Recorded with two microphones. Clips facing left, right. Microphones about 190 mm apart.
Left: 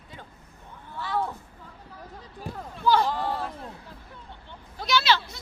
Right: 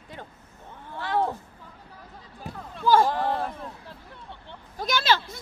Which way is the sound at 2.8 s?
45° right (ahead or behind).